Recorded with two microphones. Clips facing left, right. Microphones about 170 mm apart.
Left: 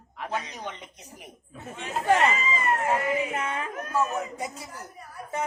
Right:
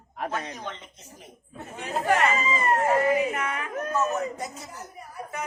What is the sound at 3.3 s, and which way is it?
Speech, 30° left (ahead or behind).